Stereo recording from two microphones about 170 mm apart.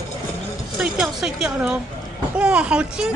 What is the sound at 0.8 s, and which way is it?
A woman's voice, 5° right (ahead or behind).